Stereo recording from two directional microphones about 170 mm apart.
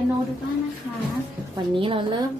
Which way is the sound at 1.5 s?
30° right (ahead or behind).